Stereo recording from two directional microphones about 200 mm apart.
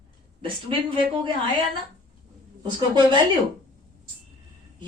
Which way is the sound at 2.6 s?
25° right (ahead or behind).